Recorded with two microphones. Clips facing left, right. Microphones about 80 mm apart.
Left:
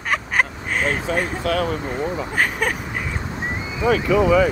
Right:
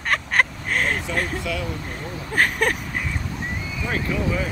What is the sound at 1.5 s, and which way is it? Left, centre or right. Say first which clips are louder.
Speech: left 7 dB; left.